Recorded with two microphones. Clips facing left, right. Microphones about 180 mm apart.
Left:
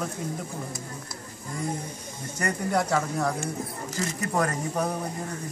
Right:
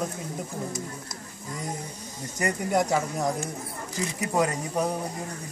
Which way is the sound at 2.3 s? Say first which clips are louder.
Right 1 dB; 15° right (ahead or behind).